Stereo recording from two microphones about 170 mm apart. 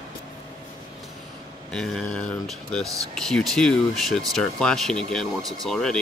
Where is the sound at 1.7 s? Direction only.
5° left (ahead or behind).